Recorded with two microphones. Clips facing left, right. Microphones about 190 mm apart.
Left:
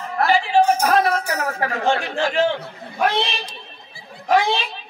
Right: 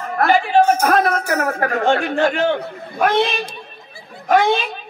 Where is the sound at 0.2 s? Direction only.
55° right (ahead or behind).